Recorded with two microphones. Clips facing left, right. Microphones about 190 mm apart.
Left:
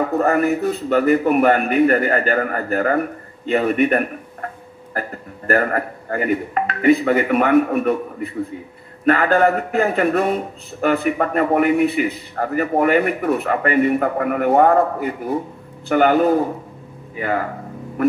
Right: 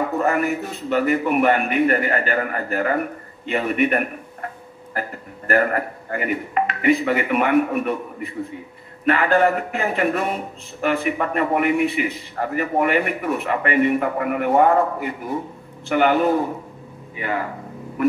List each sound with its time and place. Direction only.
0.2 s a man's voice: 40° left (ahead or behind)
5.5 s speech: 40° left (ahead or behind)